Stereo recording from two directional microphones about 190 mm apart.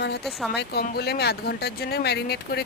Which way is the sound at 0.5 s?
60° left (ahead or behind).